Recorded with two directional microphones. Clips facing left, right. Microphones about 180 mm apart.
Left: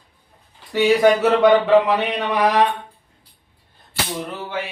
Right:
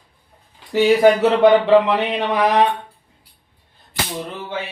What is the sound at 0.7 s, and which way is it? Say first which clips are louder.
Speech: right 2 dB; 30° right (ahead or behind).